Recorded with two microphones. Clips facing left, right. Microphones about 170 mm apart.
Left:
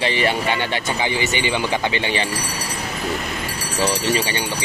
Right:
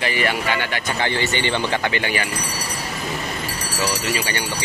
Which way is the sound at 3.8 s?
30° left (ahead or behind).